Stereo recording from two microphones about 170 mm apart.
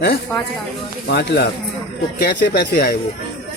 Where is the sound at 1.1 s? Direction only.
85° left.